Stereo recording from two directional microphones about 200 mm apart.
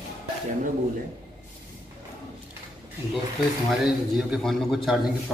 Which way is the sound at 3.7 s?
Centre (ahead or behind).